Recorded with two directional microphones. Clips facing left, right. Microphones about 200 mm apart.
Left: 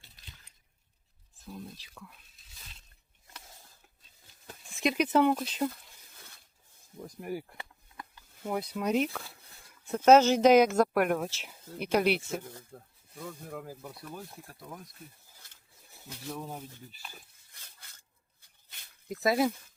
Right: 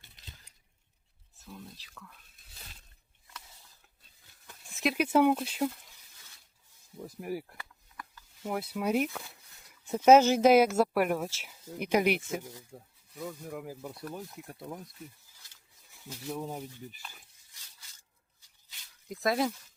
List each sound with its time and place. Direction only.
1.5 s speech: 15° left (ahead or behind)
4.6 s speech: centre (ahead or behind)
7.0 s speech: 5° right (ahead or behind)
7.5 s a sound: 25° left (ahead or behind)
8.4 s speech: 5° right (ahead or behind)
16.3 s speech: 15° right (ahead or behind)
17.5 s filing: 55° left (ahead or behind)
19.2 s speech: 5° left (ahead or behind)